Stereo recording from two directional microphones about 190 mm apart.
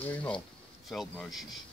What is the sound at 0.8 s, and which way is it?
Speech, centre (ahead or behind).